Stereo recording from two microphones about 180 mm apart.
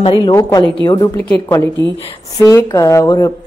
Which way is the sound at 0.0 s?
25° left (ahead or behind).